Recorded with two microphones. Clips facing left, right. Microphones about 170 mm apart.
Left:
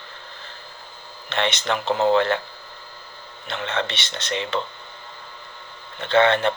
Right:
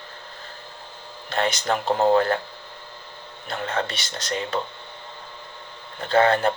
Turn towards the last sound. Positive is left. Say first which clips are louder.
# left 1 dB
turn(degrees=-35)  # may be behind; listen again after turning